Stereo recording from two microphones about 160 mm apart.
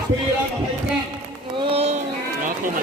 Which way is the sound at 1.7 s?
40° right (ahead or behind).